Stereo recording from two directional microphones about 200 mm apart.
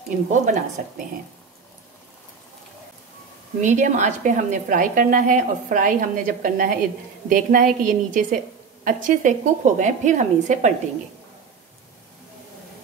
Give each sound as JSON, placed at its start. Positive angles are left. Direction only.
{"t": 0.1, "sound": "a woman's voice", "side_deg": -40}
{"t": 3.6, "sound": "a woman's voice", "side_deg": -40}